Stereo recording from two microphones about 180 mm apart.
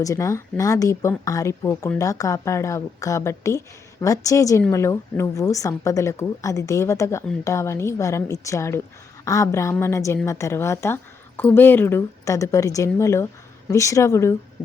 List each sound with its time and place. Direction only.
0.0 s a woman's voice: 20° left (ahead or behind)